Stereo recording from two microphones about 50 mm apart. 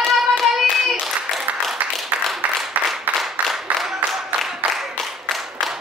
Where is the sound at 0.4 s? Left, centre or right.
Centre.